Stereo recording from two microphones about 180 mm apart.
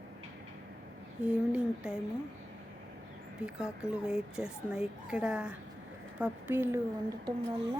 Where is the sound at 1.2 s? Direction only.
5° right (ahead or behind).